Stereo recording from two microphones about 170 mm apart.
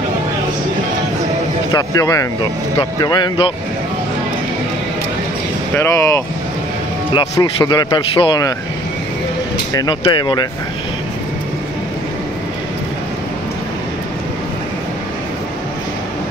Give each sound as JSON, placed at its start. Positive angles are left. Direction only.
{"t": 1.7, "sound": "a man's voice", "side_deg": 20}
{"t": 5.8, "sound": "speech", "side_deg": 15}
{"t": 7.2, "sound": "a man's voice", "side_deg": 25}
{"t": 9.8, "sound": "a man's voice", "side_deg": 25}